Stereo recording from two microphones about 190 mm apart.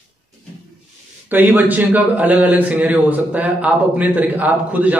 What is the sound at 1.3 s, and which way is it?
A man's voice, 10° right (ahead or behind).